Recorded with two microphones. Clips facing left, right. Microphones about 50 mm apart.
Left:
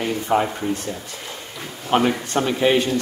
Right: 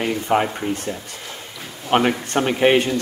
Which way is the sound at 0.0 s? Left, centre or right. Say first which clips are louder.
Right 1 dB; right.